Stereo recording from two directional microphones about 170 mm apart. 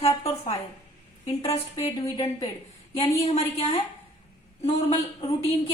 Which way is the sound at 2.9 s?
35° left (ahead or behind).